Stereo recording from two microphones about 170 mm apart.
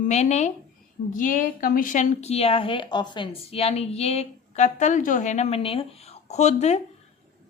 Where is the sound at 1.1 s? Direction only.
50° left (ahead or behind).